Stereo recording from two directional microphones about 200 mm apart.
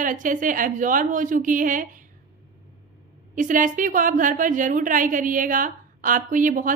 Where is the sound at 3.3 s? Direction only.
40° right (ahead or behind).